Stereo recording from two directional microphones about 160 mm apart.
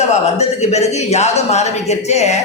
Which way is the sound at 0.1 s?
45° left (ahead or behind).